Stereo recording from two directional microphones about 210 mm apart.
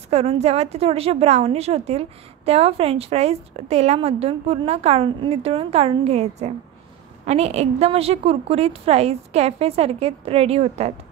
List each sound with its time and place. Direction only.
0.1 s a woman's voice: 30° right (ahead or behind)